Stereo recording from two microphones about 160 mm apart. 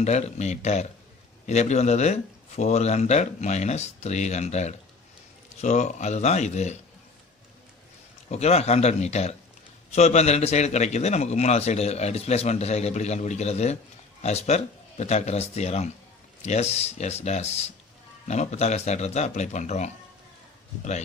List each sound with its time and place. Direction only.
0.0 s a man's voice: 45° left (ahead or behind)
8.3 s a man's voice: 40° left (ahead or behind)